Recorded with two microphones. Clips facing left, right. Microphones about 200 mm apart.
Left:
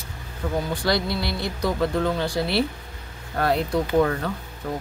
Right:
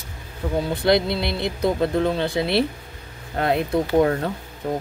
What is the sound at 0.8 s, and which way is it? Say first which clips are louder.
Speech: right 8 dB; 20° right (ahead or behind).